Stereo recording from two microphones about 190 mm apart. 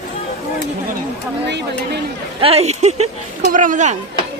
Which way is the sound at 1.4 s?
65° right (ahead or behind).